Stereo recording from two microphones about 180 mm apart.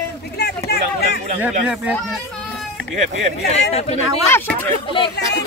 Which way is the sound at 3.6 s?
35° left (ahead or behind).